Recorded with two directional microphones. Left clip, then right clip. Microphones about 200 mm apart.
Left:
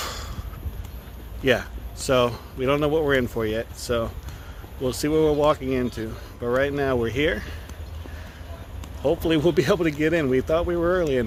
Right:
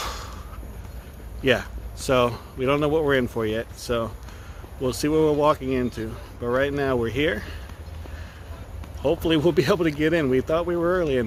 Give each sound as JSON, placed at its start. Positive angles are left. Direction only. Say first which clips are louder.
{"t": 0.0, "sound": "a sound", "louder": "even", "side_deg": -10}
{"t": 1.5, "sound": "speech", "louder": "even", "side_deg": -5}
{"t": 9.0, "sound": "speech", "louder": "even", "side_deg": 0}